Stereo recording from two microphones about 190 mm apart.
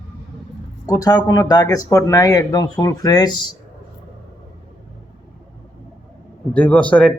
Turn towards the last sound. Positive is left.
turn(degrees=5)  # may be behind; listen again after turning